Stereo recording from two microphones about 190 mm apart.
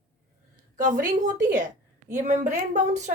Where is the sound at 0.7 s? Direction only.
45° right (ahead or behind).